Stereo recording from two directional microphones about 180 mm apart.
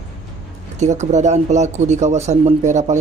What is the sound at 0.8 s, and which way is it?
Speech, 40° right (ahead or behind).